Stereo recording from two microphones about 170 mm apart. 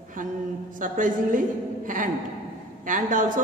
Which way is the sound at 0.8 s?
50° right (ahead or behind).